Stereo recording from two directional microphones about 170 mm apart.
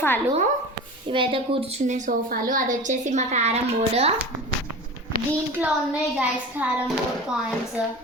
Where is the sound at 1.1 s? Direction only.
30° right (ahead or behind).